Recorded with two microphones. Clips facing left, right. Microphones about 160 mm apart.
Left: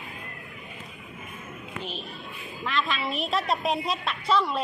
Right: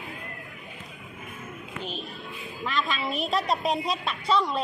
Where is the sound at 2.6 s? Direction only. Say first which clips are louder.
Even; centre (ahead or behind).